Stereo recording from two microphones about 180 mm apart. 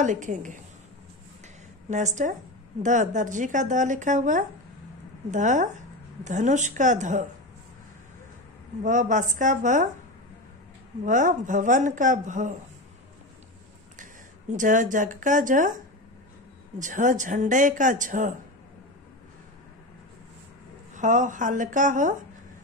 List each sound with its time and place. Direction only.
0.0 s speech: 45° right (ahead or behind)
1.9 s speech: 40° right (ahead or behind)
8.8 s speech: 45° right (ahead or behind)
11.1 s speech: 45° right (ahead or behind)
14.5 s speech: 45° right (ahead or behind)
20.9 s speech: 45° right (ahead or behind)